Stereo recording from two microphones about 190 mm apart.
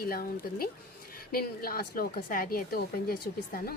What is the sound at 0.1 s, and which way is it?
A woman's voice, 50° left (ahead or behind).